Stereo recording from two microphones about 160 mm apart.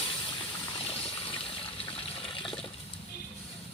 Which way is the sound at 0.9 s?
35° left (ahead or behind).